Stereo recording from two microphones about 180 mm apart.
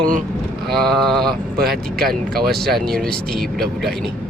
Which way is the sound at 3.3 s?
60° right (ahead or behind).